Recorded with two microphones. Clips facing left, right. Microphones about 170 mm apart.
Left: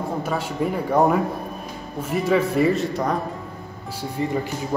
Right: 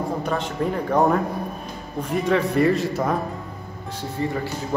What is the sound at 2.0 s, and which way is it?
Speech, 5° left (ahead or behind).